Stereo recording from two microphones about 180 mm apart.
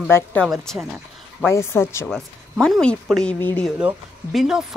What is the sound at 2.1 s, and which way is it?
Speech, 5° left (ahead or behind).